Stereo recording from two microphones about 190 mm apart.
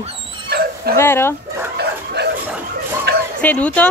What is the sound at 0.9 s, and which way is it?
Speech, 10° left (ahead or behind).